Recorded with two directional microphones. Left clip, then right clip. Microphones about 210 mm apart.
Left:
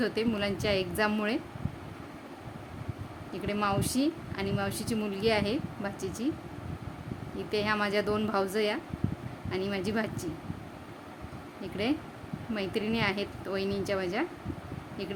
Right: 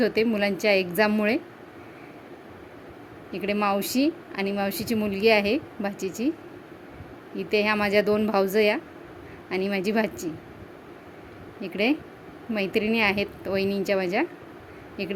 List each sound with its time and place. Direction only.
0.0 s a woman's voice: 25° right (ahead or behind)
3.3 s a woman's voice: 25° right (ahead or behind)
7.3 s a woman's voice: 25° right (ahead or behind)
11.6 s a woman's voice: 25° right (ahead or behind)